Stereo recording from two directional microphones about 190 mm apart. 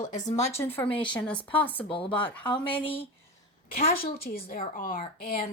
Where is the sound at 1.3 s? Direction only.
25° left (ahead or behind).